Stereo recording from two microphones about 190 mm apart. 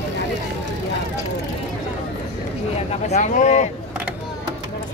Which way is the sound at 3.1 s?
40° left (ahead or behind).